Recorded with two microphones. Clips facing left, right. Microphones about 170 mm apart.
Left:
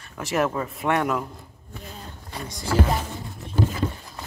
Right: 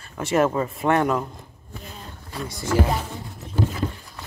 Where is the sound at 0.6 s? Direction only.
Centre (ahead or behind).